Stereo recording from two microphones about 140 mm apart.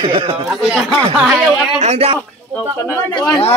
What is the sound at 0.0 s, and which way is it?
Speech, 40° right (ahead or behind).